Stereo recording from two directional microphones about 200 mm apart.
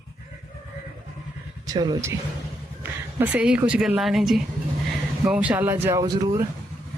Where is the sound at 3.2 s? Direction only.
5° right (ahead or behind).